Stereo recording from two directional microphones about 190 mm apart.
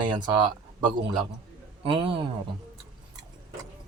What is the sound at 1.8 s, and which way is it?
Speech, 30° right (ahead or behind).